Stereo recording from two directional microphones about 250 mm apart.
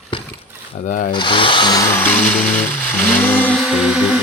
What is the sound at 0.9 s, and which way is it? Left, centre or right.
Speech, left.